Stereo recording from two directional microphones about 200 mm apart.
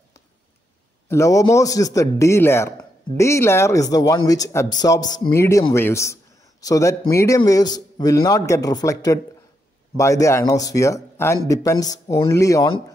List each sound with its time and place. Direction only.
1.0 s a man's voice: 15° left (ahead or behind)